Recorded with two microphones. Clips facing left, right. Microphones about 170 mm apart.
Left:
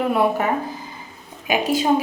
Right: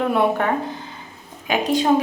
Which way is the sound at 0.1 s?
5° left (ahead or behind).